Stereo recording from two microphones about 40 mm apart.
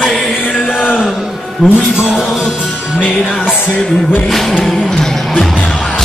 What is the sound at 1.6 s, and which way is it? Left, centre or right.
Music, centre.